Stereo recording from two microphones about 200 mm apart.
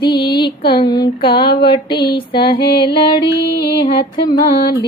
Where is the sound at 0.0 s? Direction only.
25° left (ahead or behind).